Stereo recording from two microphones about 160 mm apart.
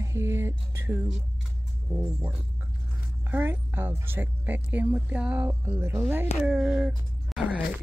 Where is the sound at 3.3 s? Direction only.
10° right (ahead or behind).